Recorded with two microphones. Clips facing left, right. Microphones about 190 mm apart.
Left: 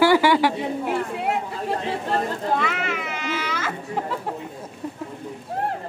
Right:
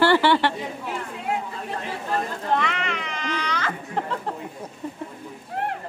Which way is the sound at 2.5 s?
5° left (ahead or behind).